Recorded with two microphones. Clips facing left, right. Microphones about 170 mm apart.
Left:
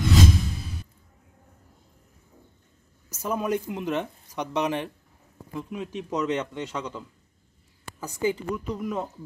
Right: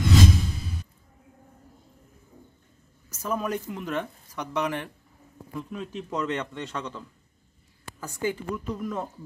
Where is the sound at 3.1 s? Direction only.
20° left (ahead or behind).